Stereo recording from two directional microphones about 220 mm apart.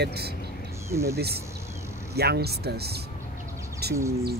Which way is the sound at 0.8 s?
10° right (ahead or behind).